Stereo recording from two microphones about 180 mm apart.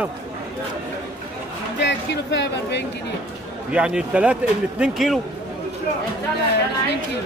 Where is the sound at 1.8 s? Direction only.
75° left (ahead or behind).